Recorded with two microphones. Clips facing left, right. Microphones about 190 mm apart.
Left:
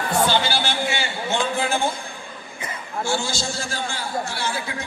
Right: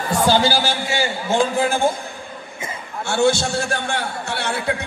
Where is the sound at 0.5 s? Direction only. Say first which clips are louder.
Right 3 dB; 40° right (ahead or behind).